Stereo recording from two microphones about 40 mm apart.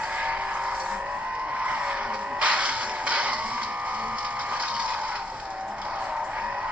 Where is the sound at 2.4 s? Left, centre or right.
Right.